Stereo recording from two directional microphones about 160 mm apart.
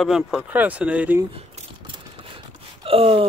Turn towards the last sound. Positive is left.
turn(degrees=-35)  # may be behind; listen again after turning